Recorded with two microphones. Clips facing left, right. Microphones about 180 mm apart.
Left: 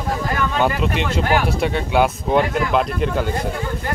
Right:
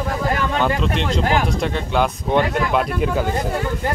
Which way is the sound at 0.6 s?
5° left (ahead or behind).